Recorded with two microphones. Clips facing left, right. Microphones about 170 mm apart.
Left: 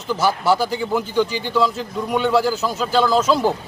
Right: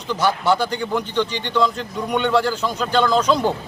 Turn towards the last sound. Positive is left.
turn(degrees=5)  # may be behind; listen again after turning